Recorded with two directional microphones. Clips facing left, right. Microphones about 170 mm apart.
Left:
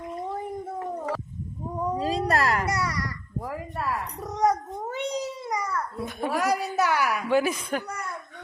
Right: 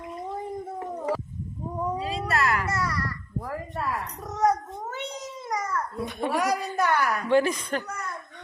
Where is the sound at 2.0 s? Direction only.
40° left (ahead or behind).